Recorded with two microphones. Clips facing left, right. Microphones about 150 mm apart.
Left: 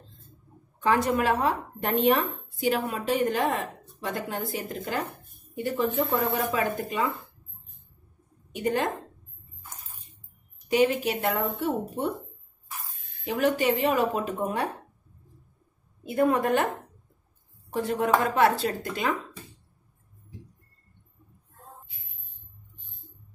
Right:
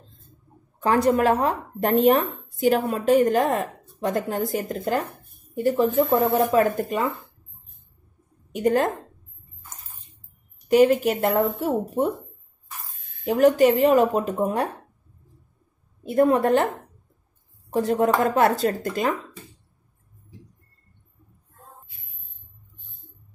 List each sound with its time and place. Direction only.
0.8 s speech: 40° right (ahead or behind)
8.5 s a woman's voice: 45° right (ahead or behind)
10.7 s speech: 45° right (ahead or behind)
13.2 s speech: 45° right (ahead or behind)
16.2 s speech: 30° right (ahead or behind)
17.7 s speech: 40° right (ahead or behind)